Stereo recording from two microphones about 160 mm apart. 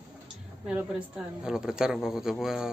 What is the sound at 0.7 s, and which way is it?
Speech, 5° right (ahead or behind).